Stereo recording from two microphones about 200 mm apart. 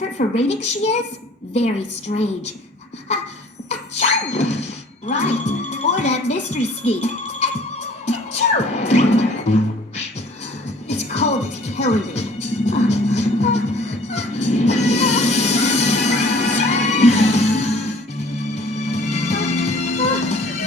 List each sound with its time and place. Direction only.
0.2 s a child's voice: 35° left (ahead or behind)
3.7 s a sound: 30° left (ahead or behind)
5.0 s speech: 35° left (ahead or behind)
8.0 s music: 35° left (ahead or behind)
10.8 s music: 35° left (ahead or behind)
18.9 s music: 35° left (ahead or behind)